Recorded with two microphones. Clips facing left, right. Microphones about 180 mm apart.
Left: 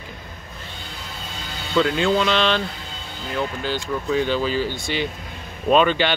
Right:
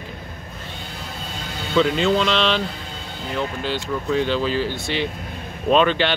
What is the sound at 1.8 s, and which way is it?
Speech, centre (ahead or behind).